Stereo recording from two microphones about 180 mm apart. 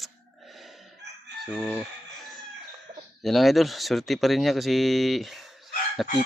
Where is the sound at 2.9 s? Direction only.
35° right (ahead or behind).